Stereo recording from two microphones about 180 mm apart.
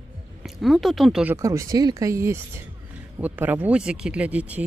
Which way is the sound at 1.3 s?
15° right (ahead or behind).